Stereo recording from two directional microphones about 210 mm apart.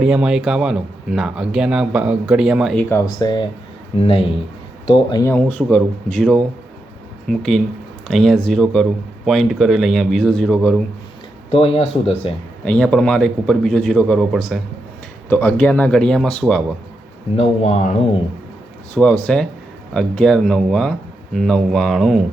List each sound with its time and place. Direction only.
0.0 s speech: 5° right (ahead or behind)
2.9 s speech: 20° left (ahead or behind)
5.5 s speech: 5° left (ahead or behind)
11.5 s speech: 25° left (ahead or behind)
12.6 s speech: 5° left (ahead or behind)
17.3 s speech: 30° left (ahead or behind)
18.9 s speech: 5° left (ahead or behind)